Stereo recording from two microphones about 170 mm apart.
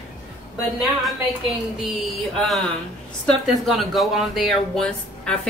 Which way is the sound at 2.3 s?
Centre (ahead or behind).